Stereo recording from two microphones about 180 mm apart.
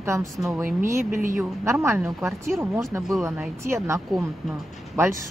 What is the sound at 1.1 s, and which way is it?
Speech, 45° right (ahead or behind).